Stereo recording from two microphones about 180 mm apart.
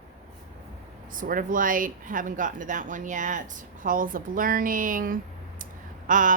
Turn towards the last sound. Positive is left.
turn(degrees=-45)  # may be behind; listen again after turning